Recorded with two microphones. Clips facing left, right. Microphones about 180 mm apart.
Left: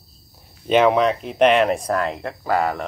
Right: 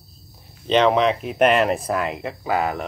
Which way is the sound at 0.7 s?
5° left (ahead or behind).